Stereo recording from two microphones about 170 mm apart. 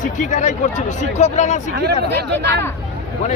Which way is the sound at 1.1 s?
40° left (ahead or behind).